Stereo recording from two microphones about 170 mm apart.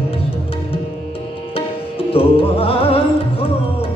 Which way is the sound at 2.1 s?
35° left (ahead or behind).